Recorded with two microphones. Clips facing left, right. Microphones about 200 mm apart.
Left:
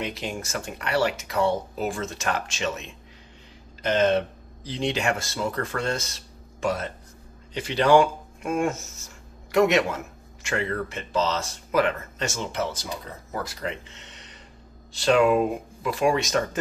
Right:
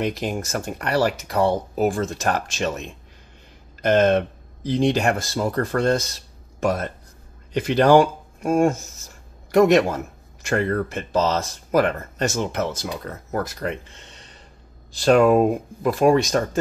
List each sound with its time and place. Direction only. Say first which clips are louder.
0.0 s speech: right 6 dB; 45° right (ahead or behind)
3.8 s speech: right 4 dB; 50° right (ahead or behind)
15.0 s speech: right 4 dB; 45° right (ahead or behind)
16.2 s speech: right 4 dB; 35° right (ahead or behind)